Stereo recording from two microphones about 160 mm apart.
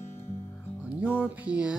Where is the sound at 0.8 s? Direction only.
10° right (ahead or behind).